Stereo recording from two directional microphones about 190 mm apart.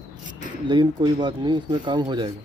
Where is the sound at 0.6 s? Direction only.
25° right (ahead or behind).